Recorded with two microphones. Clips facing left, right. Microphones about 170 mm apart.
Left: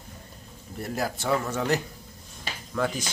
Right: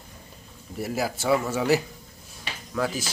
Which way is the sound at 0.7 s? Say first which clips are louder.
Right 2 dB; 5° right (ahead or behind).